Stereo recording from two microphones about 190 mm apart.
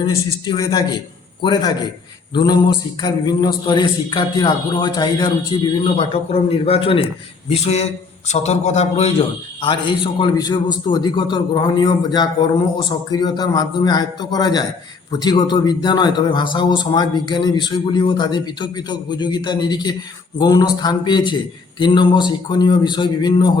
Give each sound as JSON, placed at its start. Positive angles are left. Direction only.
{"t": 0.0, "sound": "a man's voice", "side_deg": 25}
{"t": 5.7, "sound": "a man's voice", "side_deg": 30}